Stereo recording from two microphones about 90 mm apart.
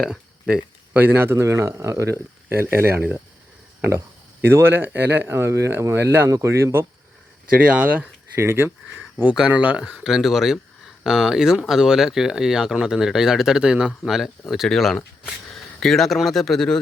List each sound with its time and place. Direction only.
0.0 s a sound: 5° right (ahead or behind)
0.9 s speech: 25° right (ahead or behind)
7.7 s speech: 15° right (ahead or behind)
8.4 s speech: 25° right (ahead or behind)
8.9 s a sound: 5° left (ahead or behind)
9.3 s speech: 10° right (ahead or behind); by 16.8 s 5° left (ahead or behind)